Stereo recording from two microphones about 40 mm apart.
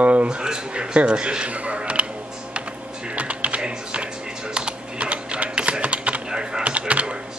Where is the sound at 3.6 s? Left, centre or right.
Right.